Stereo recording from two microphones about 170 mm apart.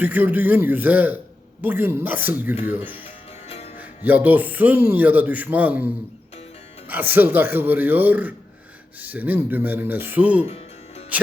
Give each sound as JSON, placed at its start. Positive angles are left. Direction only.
{"t": 0.0, "sound": "speech", "side_deg": -10}
{"t": 3.0, "sound": "music", "side_deg": 35}
{"t": 3.8, "sound": "speech", "side_deg": -10}
{"t": 10.4, "sound": "music", "side_deg": 35}